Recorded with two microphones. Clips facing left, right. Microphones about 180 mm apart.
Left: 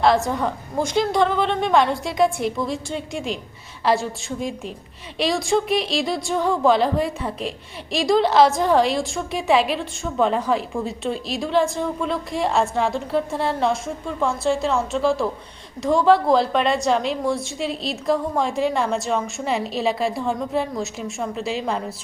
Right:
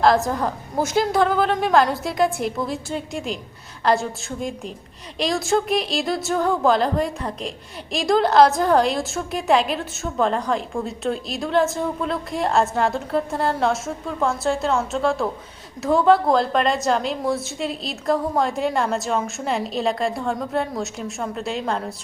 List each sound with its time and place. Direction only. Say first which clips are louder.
0.0 s a woman's voice: even; centre (ahead or behind)